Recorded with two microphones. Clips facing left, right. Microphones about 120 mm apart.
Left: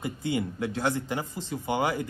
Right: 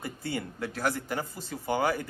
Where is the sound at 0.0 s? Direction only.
20° left (ahead or behind).